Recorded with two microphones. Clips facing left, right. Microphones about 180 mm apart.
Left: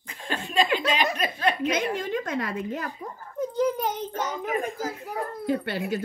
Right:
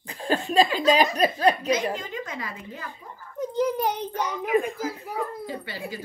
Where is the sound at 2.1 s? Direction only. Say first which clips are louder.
Left 6 dB; 60° left (ahead or behind).